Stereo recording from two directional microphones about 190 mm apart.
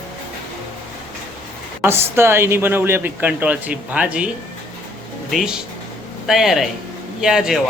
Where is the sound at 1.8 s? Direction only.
10° right (ahead or behind).